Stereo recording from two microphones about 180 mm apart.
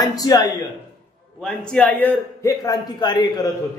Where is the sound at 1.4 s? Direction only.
5° left (ahead or behind).